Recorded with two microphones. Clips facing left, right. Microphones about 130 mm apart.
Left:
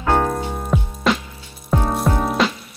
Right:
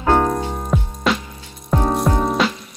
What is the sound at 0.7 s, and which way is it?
Music, centre (ahead or behind).